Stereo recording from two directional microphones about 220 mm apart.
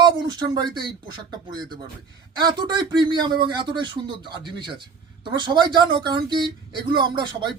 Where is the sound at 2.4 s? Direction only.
20° right (ahead or behind).